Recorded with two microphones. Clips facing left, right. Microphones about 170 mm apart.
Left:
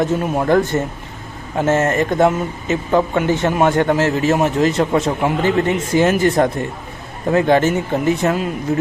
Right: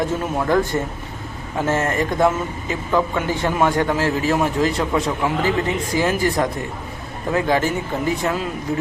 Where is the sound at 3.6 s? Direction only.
50° left (ahead or behind).